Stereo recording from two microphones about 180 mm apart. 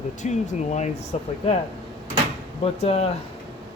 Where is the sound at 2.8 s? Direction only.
35° left (ahead or behind).